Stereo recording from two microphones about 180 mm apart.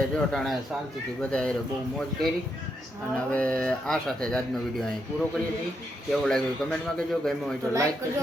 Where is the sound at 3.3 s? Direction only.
5° left (ahead or behind).